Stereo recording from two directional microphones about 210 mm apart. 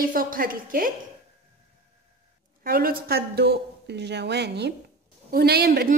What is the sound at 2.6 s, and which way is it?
A woman's voice, 45° right (ahead or behind).